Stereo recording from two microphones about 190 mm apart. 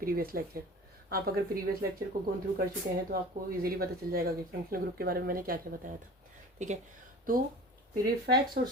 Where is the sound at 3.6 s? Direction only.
50° right (ahead or behind).